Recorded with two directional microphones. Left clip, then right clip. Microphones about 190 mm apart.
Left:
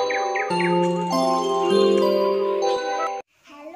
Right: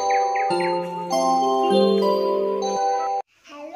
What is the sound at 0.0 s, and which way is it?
Music, 60° left (ahead or behind).